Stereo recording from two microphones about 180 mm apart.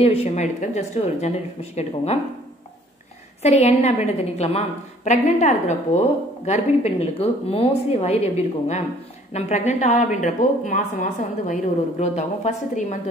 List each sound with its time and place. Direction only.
0.0 s a woman's voice: 35° left (ahead or behind)
3.4 s a woman's voice: 35° left (ahead or behind)